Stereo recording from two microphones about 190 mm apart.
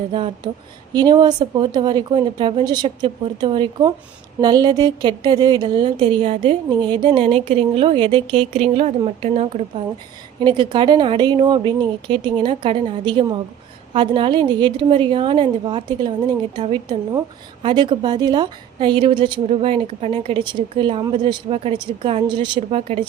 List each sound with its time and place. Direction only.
0.1 s a woman's voice: 30° right (ahead or behind)